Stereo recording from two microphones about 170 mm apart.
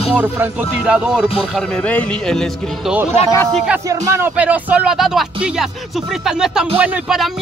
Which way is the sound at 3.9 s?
15° right (ahead or behind).